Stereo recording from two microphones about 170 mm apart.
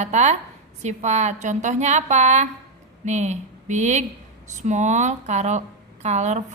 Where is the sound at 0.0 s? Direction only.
40° right (ahead or behind).